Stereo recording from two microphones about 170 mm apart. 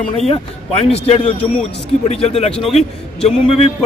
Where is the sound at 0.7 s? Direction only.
35° left (ahead or behind).